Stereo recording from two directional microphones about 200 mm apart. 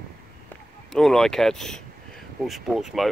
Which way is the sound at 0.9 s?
Centre (ahead or behind).